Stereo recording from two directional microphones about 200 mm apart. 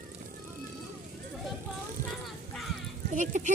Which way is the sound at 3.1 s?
40° right (ahead or behind).